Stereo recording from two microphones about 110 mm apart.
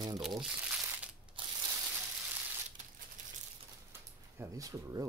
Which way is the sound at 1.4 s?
50° right (ahead or behind).